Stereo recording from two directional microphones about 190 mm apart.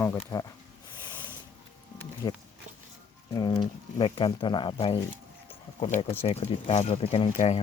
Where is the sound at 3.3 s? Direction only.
20° left (ahead or behind).